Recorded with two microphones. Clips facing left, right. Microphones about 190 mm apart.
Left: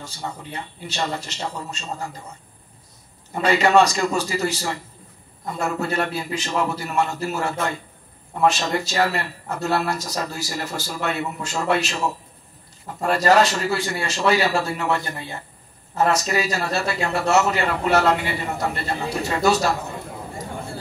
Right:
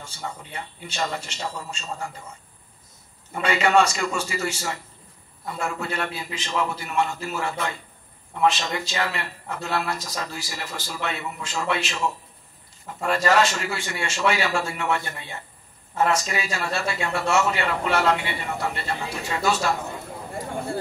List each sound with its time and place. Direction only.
0.0 s a man's voice: 35° left (ahead or behind)
3.3 s a man's voice: 35° left (ahead or behind)
13.0 s a man's voice: 40° left (ahead or behind)